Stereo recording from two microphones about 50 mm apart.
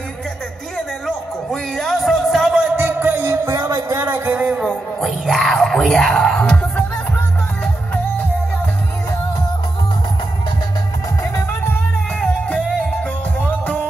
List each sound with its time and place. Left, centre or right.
0.7 s music: centre
2.7 s music: right
3.3 s music: right
4.3 s a sound: right
4.6 s music: centre
13.4 s music: left